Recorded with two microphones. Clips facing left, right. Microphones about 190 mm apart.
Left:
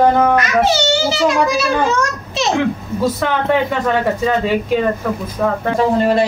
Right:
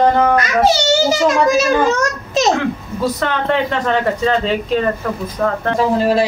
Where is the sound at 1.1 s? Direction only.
45° right (ahead or behind).